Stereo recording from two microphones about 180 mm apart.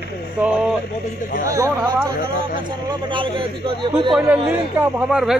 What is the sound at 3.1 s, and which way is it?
Speech, 30° right (ahead or behind).